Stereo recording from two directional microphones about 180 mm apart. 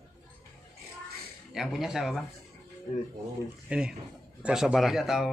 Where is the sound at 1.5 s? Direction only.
Centre (ahead or behind).